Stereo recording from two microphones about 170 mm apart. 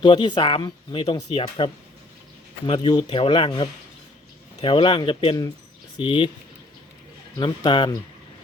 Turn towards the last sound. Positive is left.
turn(degrees=25)  # may be behind; listen again after turning